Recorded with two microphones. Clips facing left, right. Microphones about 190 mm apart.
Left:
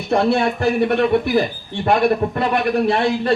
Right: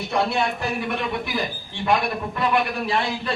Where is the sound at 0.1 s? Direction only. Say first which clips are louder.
Left 7 dB; 55° left (ahead or behind).